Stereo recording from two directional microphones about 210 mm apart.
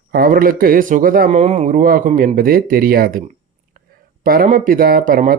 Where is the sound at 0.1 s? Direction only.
45° right (ahead or behind).